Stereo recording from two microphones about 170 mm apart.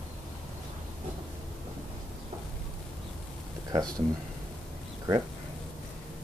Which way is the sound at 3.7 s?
20° right (ahead or behind).